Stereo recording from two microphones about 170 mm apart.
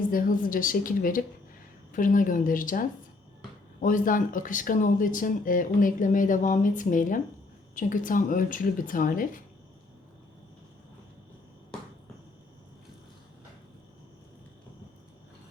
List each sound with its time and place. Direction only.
0.1 s speech: 55° left (ahead or behind)